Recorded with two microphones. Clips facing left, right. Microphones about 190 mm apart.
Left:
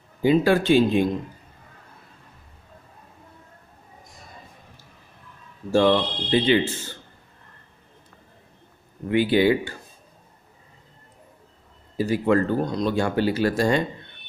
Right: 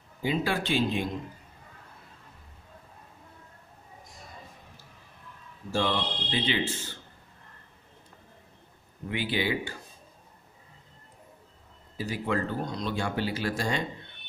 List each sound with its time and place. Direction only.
0.2 s speech: 50° left (ahead or behind)
5.7 s speech: 50° left (ahead or behind)
9.1 s speech: 50° left (ahead or behind)
12.0 s speech: 50° left (ahead or behind)